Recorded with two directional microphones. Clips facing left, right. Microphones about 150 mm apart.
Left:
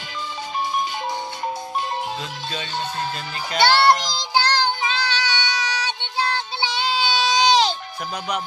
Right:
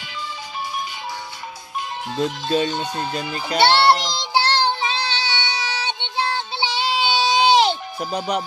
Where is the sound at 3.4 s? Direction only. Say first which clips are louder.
Right 1 dB; 30° right (ahead or behind).